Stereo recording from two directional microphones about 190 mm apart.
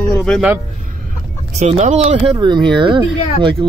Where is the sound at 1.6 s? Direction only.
35° right (ahead or behind).